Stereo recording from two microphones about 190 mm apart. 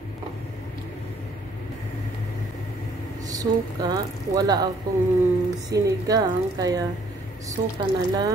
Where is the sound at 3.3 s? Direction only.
20° right (ahead or behind).